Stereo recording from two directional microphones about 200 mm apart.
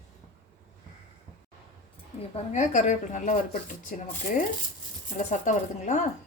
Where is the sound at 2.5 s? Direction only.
40° left (ahead or behind).